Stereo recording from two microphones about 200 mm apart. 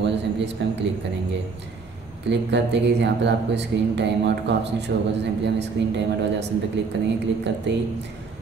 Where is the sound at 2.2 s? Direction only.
60° right (ahead or behind).